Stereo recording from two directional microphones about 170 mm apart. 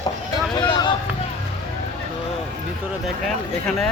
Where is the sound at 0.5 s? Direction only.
25° left (ahead or behind).